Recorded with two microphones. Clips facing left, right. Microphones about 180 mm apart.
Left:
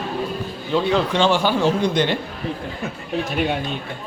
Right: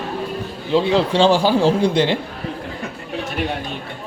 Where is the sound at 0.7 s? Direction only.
25° right (ahead or behind).